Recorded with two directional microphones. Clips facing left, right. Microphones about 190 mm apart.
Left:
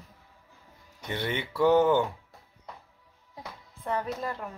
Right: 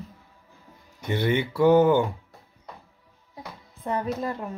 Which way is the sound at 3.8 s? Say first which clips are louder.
Right 4 dB; 20° right (ahead or behind).